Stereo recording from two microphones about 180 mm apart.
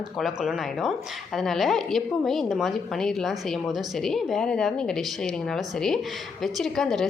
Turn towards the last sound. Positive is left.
turn(degrees=0)  # may be behind; listen again after turning